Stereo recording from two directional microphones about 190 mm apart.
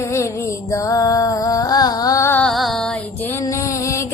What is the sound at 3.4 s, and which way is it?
Music, 15° left (ahead or behind).